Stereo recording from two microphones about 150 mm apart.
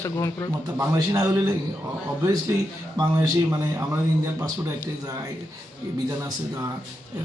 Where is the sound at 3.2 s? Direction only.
20° right (ahead or behind).